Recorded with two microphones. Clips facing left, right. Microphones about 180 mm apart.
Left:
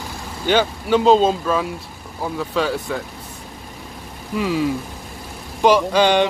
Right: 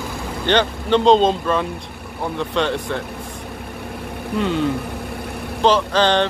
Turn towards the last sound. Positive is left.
turn(degrees=10)  # may be behind; listen again after turning